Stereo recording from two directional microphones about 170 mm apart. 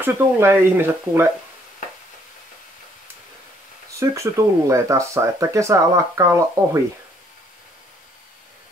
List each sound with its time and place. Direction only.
0.0 s speech: 15° right (ahead or behind)
4.0 s speech: 15° right (ahead or behind)